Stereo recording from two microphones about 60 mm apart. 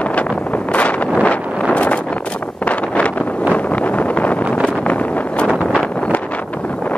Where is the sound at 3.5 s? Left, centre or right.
Left.